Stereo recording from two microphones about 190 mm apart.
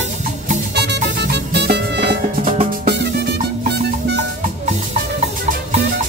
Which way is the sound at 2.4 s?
35° right (ahead or behind).